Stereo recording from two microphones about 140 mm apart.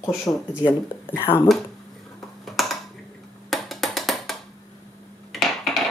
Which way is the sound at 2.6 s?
Centre (ahead or behind).